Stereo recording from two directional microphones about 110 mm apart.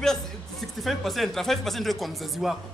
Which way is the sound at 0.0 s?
Centre (ahead or behind).